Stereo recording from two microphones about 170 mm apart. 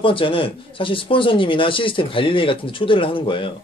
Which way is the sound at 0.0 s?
30° left (ahead or behind).